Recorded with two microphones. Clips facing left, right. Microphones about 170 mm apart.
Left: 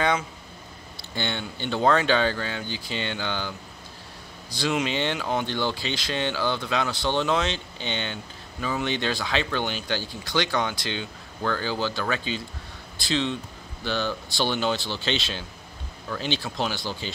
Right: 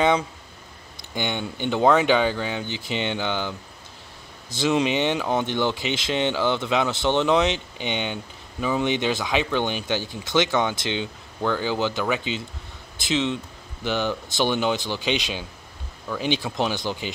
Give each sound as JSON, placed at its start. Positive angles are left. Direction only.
{"t": 1.1, "sound": "speech", "side_deg": -15}